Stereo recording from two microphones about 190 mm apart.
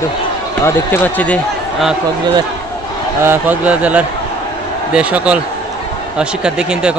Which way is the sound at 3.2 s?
10° right (ahead or behind).